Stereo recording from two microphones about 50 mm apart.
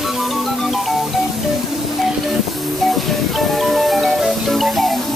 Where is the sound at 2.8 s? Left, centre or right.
Centre.